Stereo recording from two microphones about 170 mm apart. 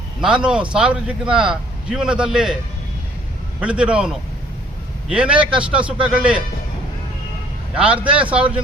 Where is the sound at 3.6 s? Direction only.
5° right (ahead or behind).